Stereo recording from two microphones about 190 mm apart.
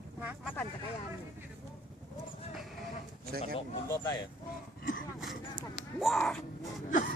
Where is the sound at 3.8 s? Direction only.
15° left (ahead or behind).